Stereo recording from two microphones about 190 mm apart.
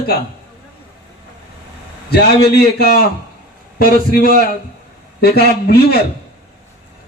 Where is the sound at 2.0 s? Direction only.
55° left (ahead or behind).